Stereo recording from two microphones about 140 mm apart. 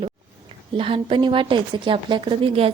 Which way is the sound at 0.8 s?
40° right (ahead or behind).